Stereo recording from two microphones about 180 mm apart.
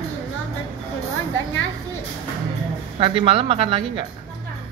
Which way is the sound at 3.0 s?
30° right (ahead or behind).